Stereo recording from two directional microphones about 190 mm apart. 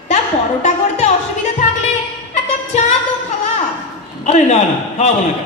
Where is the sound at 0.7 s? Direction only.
35° left (ahead or behind).